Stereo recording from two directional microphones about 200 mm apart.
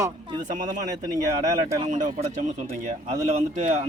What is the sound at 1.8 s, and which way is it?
Speech, 40° right (ahead or behind).